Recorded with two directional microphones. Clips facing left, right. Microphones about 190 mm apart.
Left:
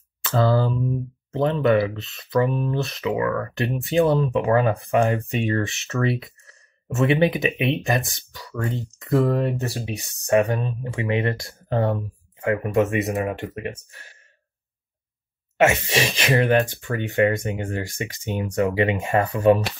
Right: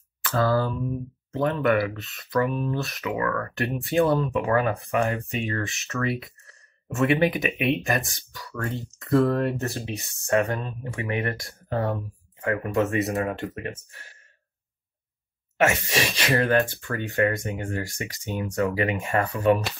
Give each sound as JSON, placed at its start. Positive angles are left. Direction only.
{"t": 0.2, "sound": "a sound", "side_deg": 25}
{"t": 1.3, "sound": "speech", "side_deg": 25}
{"t": 6.9, "sound": "speech", "side_deg": 25}
{"t": 11.7, "sound": "a sound", "side_deg": 25}
{"t": 12.4, "sound": "speech", "side_deg": 15}
{"t": 15.6, "sound": "speech", "side_deg": 15}